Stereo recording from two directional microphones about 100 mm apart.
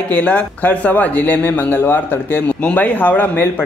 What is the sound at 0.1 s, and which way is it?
Speech, 15° left (ahead or behind).